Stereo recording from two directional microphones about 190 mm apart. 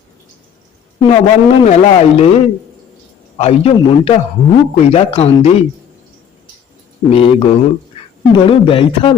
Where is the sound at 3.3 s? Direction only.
35° left (ahead or behind).